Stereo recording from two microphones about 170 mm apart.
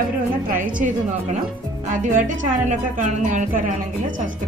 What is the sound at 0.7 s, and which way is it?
A woman's voice, 50° right (ahead or behind).